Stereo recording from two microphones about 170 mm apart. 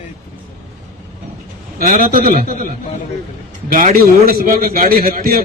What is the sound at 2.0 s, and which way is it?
Speech, 60° right (ahead or behind).